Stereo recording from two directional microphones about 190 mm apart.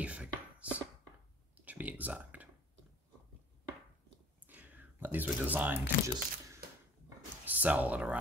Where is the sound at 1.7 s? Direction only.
10° right (ahead or behind).